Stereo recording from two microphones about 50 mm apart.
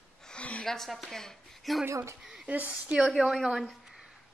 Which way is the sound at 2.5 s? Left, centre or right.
Right.